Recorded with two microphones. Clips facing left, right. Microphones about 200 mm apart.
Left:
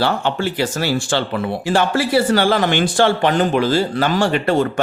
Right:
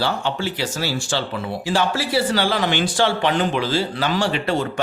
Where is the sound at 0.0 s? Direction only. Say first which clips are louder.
Left 4 dB; 55° left (ahead or behind).